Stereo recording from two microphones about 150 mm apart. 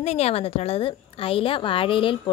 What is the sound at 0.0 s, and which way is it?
A woman's voice, 45° left (ahead or behind).